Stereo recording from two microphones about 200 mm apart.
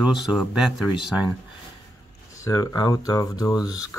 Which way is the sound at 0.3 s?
5° right (ahead or behind).